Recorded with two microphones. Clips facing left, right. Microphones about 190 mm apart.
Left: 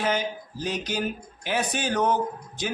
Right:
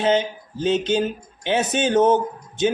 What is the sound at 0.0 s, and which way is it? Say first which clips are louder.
Speech: right 7 dB; 25° right (ahead or behind).